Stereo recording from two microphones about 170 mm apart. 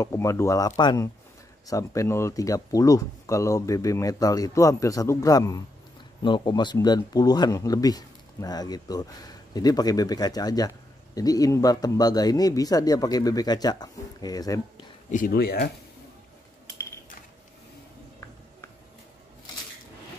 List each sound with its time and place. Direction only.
0.0 s speech: 20° left (ahead or behind)
15.0 s speech: 50° left (ahead or behind)